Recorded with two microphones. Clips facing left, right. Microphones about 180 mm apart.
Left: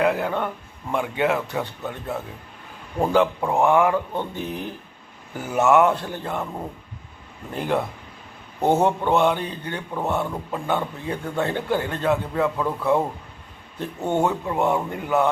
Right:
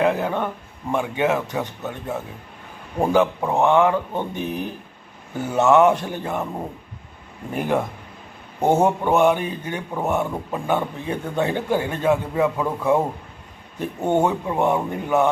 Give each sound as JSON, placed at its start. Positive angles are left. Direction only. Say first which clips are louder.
{"t": 0.0, "sound": "a man's voice", "louder": "right 1 dB", "side_deg": -20}
{"t": 1.5, "sound": "speech", "louder": "right 1 dB", "side_deg": -10}
{"t": 3.0, "sound": "speech", "louder": "right 1 dB", "side_deg": -15}
{"t": 3.5, "sound": "speech", "louder": "right 1 dB", "side_deg": 10}
{"t": 4.1, "sound": "speech", "louder": "right 2 dB", "side_deg": -15}
{"t": 5.5, "sound": "speech", "louder": "right 1 dB", "side_deg": 10}
{"t": 5.8, "sound": "speech", "louder": "right 3 dB", "side_deg": -20}
{"t": 7.5, "sound": "speech", "louder": "right 2 dB", "side_deg": -15}